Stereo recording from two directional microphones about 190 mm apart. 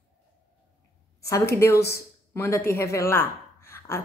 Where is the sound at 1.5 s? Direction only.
15° left (ahead or behind).